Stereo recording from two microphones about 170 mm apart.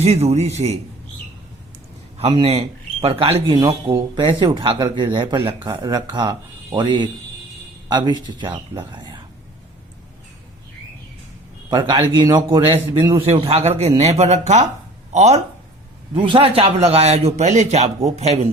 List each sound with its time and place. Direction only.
0.0 s a man's voice: 40° right (ahead or behind)
2.1 s speech: 35° right (ahead or behind)
3.5 s speech: 25° right (ahead or behind)
11.7 s a man's voice: 25° right (ahead or behind)